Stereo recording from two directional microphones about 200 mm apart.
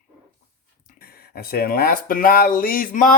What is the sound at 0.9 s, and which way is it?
Speech, 50° left (ahead or behind).